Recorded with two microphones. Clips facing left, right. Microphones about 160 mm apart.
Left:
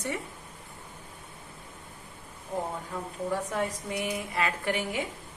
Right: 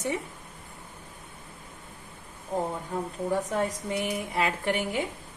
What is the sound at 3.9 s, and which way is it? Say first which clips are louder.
Speech: right 2 dB; 25° right (ahead or behind).